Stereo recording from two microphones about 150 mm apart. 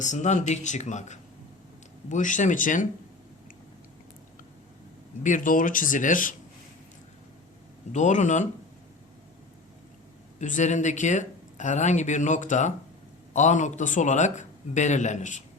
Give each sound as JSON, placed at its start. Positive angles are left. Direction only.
{"t": 0.0, "sound": "speech", "side_deg": 55}
{"t": 5.2, "sound": "speech", "side_deg": 60}
{"t": 7.9, "sound": "speech", "side_deg": 55}
{"t": 10.3, "sound": "speech", "side_deg": 55}